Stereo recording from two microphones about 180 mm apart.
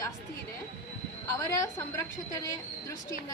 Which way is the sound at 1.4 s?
15° left (ahead or behind).